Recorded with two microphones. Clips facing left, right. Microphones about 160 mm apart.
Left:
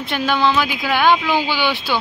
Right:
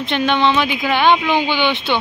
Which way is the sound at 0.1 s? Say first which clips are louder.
Right 2 dB; 5° left (ahead or behind).